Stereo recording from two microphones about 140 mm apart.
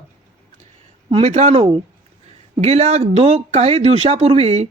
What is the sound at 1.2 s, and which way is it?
Speech, 55° right (ahead or behind).